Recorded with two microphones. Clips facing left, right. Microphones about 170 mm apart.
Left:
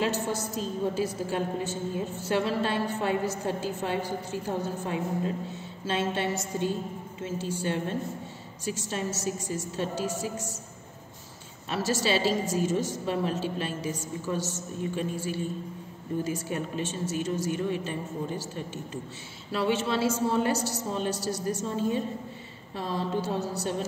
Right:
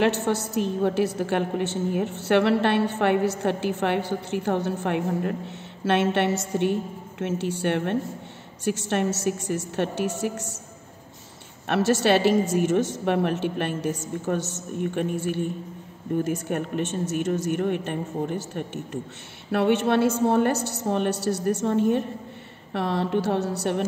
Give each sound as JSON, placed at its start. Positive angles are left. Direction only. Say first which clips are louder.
{"t": 0.0, "sound": "a woman's voice", "louder": "right 6 dB", "side_deg": -75}
{"t": 11.6, "sound": "a woman's voice", "louder": "right 7 dB", "side_deg": -65}